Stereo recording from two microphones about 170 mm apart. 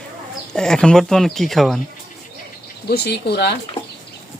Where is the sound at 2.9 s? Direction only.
70° left (ahead or behind).